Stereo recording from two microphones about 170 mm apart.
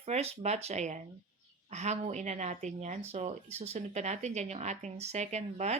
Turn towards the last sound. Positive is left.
turn(degrees=-40)  # may be behind; listen again after turning